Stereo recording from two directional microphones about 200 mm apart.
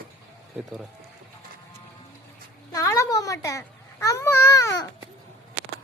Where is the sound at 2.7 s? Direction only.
15° left (ahead or behind).